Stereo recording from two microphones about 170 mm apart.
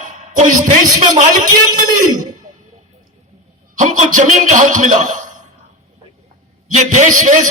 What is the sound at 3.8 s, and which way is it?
A man's voice, 45° right (ahead or behind).